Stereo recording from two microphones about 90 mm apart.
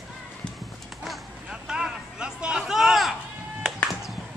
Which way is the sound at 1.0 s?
5° right (ahead or behind).